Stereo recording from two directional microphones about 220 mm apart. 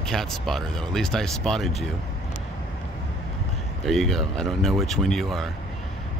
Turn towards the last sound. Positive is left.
turn(degrees=0)  # may be behind; listen again after turning